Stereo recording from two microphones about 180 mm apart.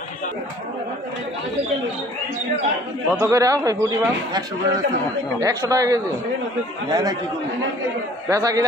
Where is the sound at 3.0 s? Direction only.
15° right (ahead or behind).